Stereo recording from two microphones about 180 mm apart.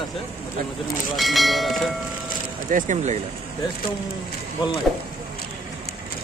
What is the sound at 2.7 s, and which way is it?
Speech, 40° right (ahead or behind).